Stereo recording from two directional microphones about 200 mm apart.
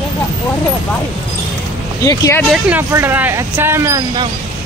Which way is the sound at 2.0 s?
15° left (ahead or behind).